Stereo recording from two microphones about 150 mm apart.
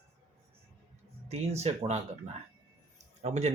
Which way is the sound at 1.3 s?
45° right (ahead or behind).